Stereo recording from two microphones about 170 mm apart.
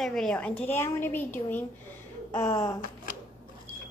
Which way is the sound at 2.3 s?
20° left (ahead or behind).